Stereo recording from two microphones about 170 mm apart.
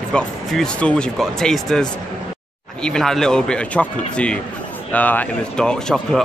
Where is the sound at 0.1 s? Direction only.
5° left (ahead or behind).